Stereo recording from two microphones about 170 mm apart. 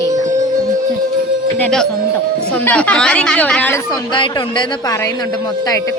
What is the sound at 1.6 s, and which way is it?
A woman's voice, 5° left (ahead or behind).